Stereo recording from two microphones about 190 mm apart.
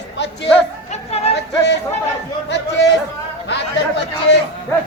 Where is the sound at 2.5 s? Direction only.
65° left (ahead or behind).